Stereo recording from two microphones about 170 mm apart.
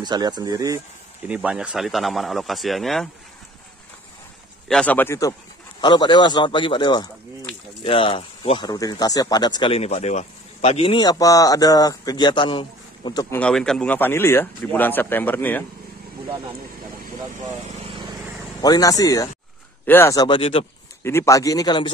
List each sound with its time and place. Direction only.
0.0 s speech: 25° right (ahead or behind)
1.2 s speech: 10° right (ahead or behind)
4.6 s speech: 5° left (ahead or behind)
5.8 s speech: 25° left (ahead or behind)
13.4 s speech: 5° left (ahead or behind)
17.7 s vehicle: 30° right (ahead or behind)
18.6 s speech: 20° left (ahead or behind)
21.0 s speech: 15° left (ahead or behind)